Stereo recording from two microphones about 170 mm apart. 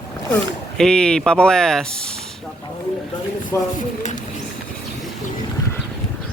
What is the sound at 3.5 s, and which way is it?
Speech, 15° left (ahead or behind).